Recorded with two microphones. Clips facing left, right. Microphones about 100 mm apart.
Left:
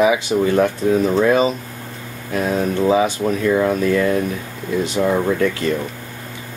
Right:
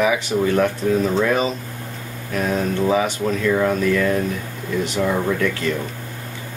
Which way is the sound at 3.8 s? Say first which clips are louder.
Left 2 dB; 25° left (ahead or behind).